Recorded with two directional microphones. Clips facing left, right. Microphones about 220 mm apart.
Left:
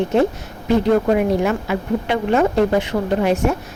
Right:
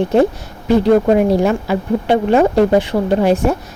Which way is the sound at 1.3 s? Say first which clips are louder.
Right 4 dB; 35° right (ahead or behind).